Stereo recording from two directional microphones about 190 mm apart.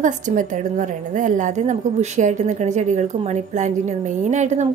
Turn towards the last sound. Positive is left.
turn(degrees=-40)  # may be behind; listen again after turning